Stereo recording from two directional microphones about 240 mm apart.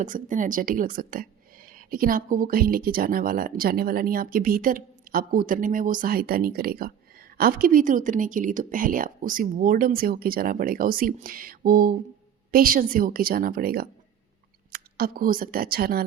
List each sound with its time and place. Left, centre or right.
0.0 s speech: right